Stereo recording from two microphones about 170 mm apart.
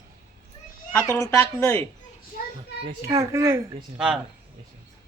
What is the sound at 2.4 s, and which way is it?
Children playing, 60° left (ahead or behind).